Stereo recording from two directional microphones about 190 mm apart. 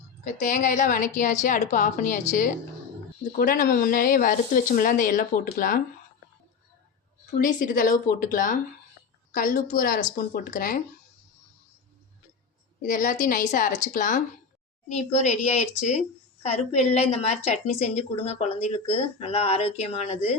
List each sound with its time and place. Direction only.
0.3 s speech: 40° left (ahead or behind)
3.3 s speech: 50° left (ahead or behind)
7.3 s speech: 45° left (ahead or behind)
12.8 s a woman's voice: 45° left (ahead or behind)